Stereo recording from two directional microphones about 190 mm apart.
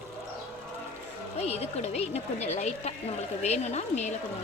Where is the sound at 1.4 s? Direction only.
35° left (ahead or behind).